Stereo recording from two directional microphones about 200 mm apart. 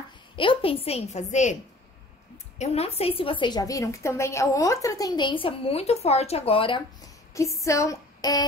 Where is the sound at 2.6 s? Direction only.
30° left (ahead or behind).